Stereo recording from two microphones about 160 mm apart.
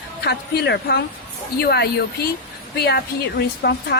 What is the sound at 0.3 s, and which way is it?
A woman's voice, 90° left.